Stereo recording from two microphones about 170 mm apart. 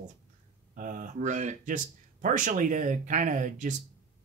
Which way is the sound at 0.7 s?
50° right (ahead or behind).